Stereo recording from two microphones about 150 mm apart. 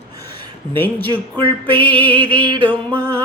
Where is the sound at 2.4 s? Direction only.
30° right (ahead or behind).